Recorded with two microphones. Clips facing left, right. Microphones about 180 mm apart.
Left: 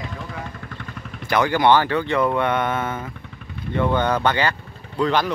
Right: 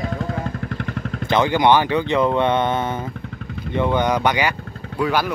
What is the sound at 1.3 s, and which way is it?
Speech, 20° right (ahead or behind).